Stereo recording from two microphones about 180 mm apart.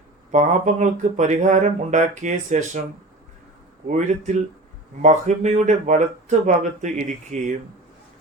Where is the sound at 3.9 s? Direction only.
40° right (ahead or behind).